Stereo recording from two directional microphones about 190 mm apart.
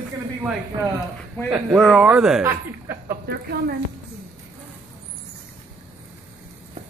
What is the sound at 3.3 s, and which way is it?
Speech, 55° right (ahead or behind).